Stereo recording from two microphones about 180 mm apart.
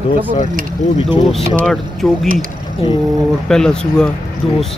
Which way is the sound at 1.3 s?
Centre (ahead or behind).